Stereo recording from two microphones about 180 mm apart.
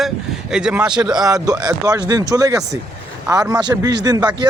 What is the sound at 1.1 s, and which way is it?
Speech, 20° right (ahead or behind).